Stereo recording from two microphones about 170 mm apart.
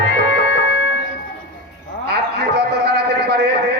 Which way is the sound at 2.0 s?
80° right.